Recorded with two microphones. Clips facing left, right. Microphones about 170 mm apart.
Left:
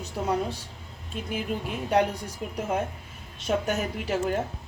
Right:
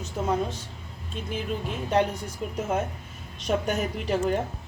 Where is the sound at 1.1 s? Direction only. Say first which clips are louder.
Even; 5° left (ahead or behind).